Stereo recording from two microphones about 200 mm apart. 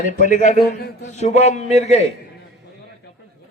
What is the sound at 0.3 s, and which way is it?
A man's voice, 35° left (ahead or behind).